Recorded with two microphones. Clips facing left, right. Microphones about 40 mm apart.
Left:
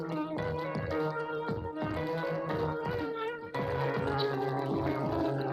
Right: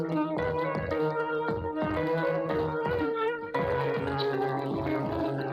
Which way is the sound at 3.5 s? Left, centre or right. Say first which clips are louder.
Right 2 dB; centre.